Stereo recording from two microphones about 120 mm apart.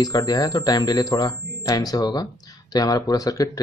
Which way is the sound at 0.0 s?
30° left (ahead or behind).